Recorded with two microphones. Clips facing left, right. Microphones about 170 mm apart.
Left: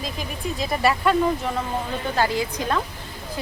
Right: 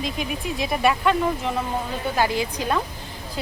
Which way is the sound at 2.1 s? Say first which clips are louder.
Even; 15° right (ahead or behind).